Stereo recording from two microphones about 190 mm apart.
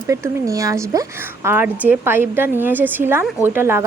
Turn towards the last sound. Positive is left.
turn(degrees=-10)  # may be behind; listen again after turning